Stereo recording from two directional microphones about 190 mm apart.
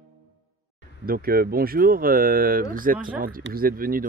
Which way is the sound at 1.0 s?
50° right (ahead or behind).